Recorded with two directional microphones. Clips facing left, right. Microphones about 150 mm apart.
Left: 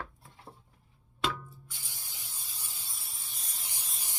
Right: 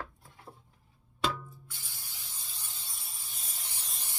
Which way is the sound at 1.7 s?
15° left (ahead or behind).